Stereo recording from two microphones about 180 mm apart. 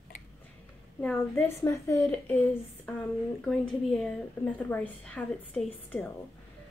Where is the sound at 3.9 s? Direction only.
5° left (ahead or behind).